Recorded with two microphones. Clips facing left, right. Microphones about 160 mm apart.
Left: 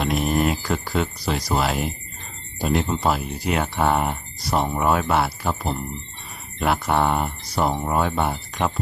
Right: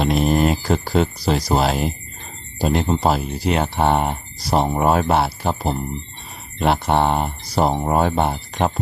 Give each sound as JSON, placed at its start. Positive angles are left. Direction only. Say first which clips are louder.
{"t": 0.0, "sound": "speech", "louder": "right 4 dB", "side_deg": -30}